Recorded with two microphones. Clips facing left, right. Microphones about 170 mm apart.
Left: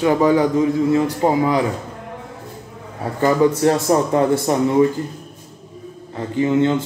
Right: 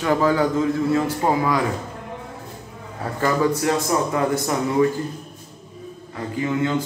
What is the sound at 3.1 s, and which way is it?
Speech, 20° left (ahead or behind).